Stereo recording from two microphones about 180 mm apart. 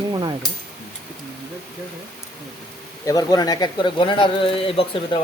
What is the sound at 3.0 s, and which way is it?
Speech, 20° left (ahead or behind).